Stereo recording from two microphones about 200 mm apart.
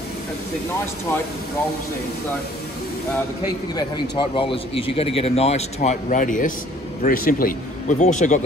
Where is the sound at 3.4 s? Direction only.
20° left (ahead or behind); by 8.4 s 35° left (ahead or behind).